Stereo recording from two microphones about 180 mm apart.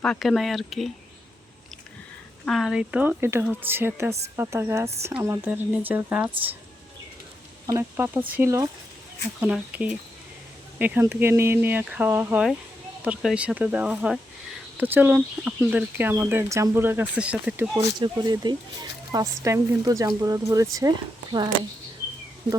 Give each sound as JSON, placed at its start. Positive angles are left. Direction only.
{"t": 0.0, "sound": "speech", "side_deg": 5}
{"t": 2.4, "sound": "speech", "side_deg": 0}
{"t": 7.7, "sound": "speech", "side_deg": -15}
{"t": 18.0, "sound": "speech", "side_deg": -25}